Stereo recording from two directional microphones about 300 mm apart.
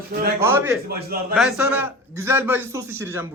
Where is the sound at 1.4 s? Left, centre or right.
Centre.